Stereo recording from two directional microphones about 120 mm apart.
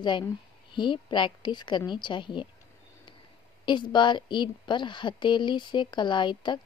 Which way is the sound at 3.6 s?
40° left (ahead or behind).